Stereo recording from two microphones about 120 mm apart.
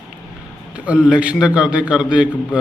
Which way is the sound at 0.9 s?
5° right (ahead or behind).